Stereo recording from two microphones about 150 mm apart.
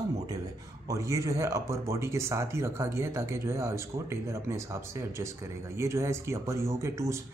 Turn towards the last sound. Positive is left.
turn(degrees=-20)  # may be behind; listen again after turning